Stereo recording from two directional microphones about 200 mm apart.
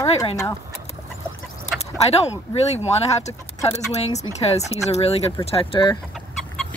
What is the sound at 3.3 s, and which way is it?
Speech, 30° left (ahead or behind).